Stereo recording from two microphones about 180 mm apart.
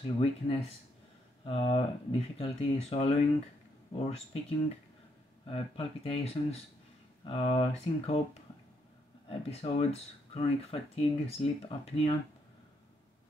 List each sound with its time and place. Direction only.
0.0 s speech: 35° left (ahead or behind)
9.3 s speech: 35° left (ahead or behind)